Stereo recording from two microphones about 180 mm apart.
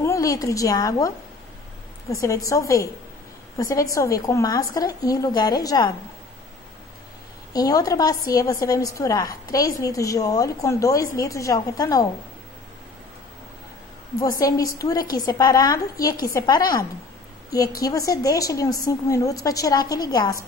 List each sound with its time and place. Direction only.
0.0 s a woman's voice: 15° left (ahead or behind)
7.5 s a woman's voice: 20° left (ahead or behind)
14.4 s a woman's voice: 20° left (ahead or behind)